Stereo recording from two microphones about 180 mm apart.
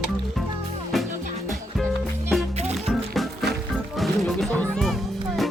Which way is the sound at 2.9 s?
Centre (ahead or behind).